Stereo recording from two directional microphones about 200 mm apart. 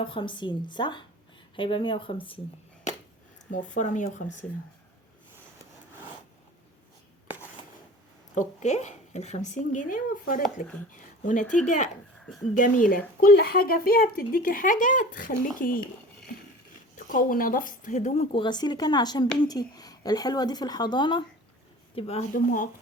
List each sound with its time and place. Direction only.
0.0 s speech: 25° left (ahead or behind)
3.5 s speech: 40° left (ahead or behind)
8.4 s speech: 35° left (ahead or behind)
12.5 s speech: 40° left (ahead or behind)
13.2 s speech: 50° left (ahead or behind)
16.9 s speech: 40° left (ahead or behind)